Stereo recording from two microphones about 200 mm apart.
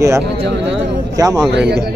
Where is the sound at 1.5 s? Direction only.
55° right (ahead or behind).